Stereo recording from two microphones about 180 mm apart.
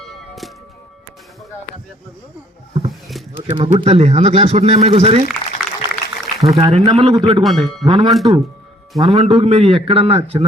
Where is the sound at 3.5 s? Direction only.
30° right (ahead or behind).